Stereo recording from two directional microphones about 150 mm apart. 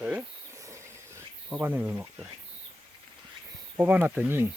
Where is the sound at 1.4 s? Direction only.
10° right (ahead or behind).